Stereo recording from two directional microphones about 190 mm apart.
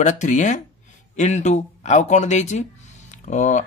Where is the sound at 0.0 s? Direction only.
40° left (ahead or behind).